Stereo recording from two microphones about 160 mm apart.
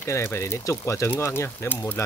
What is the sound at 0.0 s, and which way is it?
Speech, 15° left (ahead or behind).